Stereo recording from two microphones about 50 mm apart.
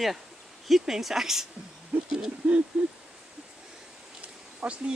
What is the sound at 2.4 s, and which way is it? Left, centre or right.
Speech, centre.